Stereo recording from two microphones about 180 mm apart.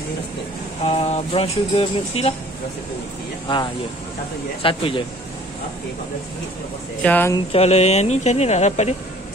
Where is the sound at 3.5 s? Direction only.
30° left (ahead or behind).